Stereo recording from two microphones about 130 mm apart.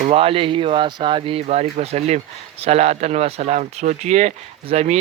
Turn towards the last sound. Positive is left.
turn(degrees=-60)  # may be behind; listen again after turning